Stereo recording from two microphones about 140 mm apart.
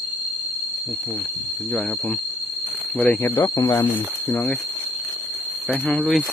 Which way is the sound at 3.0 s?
15° left (ahead or behind).